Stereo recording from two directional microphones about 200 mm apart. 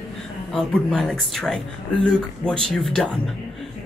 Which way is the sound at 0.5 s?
Centre (ahead or behind).